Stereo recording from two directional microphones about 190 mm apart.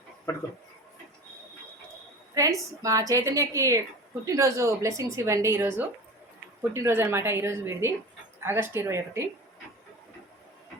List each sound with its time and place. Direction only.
2.3 s a woman's voice: 15° right (ahead or behind)